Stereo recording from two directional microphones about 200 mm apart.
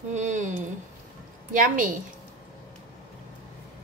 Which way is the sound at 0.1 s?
35° right (ahead or behind).